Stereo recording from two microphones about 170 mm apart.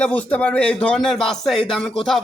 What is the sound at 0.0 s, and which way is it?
Speech, 5° left (ahead or behind).